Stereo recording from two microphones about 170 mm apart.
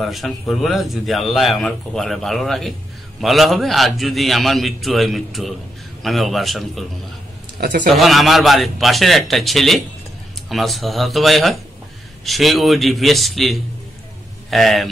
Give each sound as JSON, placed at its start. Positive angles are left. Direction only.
{"t": 0.0, "sound": "a man's voice", "side_deg": 0}
{"t": 7.6, "sound": "speech", "side_deg": -50}
{"t": 7.9, "sound": "a man's voice", "side_deg": 0}